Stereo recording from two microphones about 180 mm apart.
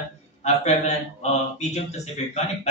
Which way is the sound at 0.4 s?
35° left (ahead or behind).